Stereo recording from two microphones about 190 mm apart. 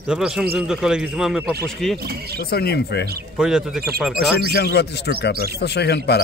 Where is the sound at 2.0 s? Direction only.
55° right (ahead or behind).